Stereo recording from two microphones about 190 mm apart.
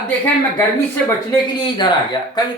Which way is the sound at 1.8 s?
20° left (ahead or behind).